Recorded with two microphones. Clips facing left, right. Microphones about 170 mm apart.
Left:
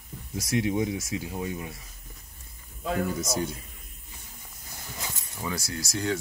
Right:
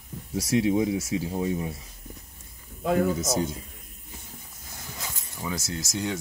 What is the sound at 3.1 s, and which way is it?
Speech, 20° right (ahead or behind).